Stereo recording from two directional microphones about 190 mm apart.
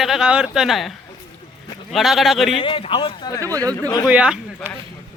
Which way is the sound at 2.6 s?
30° left (ahead or behind).